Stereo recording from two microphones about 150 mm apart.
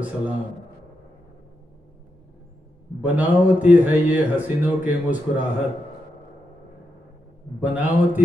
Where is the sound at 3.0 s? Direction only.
10° right (ahead or behind).